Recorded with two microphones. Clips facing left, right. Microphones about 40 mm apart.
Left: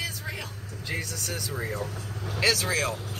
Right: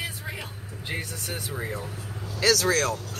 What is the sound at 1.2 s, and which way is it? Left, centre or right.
Speech, right.